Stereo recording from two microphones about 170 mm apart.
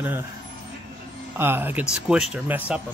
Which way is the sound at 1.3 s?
10° right (ahead or behind).